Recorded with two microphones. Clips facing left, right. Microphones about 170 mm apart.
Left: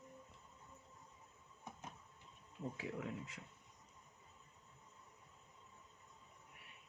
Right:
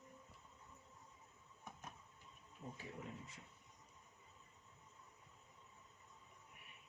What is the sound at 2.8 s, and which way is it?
Speech, 90° left.